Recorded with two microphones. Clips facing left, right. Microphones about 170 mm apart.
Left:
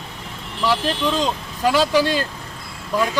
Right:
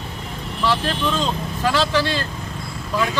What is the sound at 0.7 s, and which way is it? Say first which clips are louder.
Speech: left 1 dB; 10° left (ahead or behind).